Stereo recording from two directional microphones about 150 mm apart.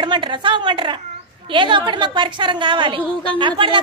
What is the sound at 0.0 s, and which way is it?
A woman's voice, 30° right (ahead or behind).